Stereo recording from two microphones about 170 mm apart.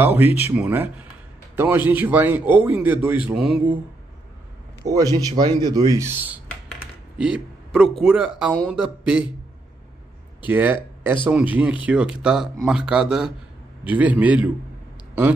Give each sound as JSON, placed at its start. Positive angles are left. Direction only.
{"t": 0.0, "sound": "a man's voice", "side_deg": -10}
{"t": 4.8, "sound": "a man's voice", "side_deg": -20}
{"t": 5.9, "sound": "a man's voice", "side_deg": -15}
{"t": 10.4, "sound": "a man's voice", "side_deg": -10}